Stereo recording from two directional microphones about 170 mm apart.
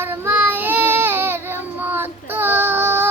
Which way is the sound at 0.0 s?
15° right (ahead or behind).